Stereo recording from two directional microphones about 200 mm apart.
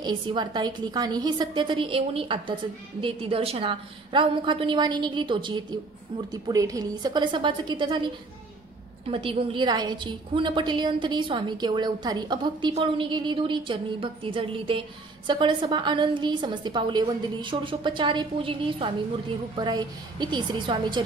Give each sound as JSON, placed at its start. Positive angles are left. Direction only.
{"t": 0.0, "sound": "a woman's voice", "side_deg": -20}
{"t": 9.1, "sound": "a woman's voice", "side_deg": -25}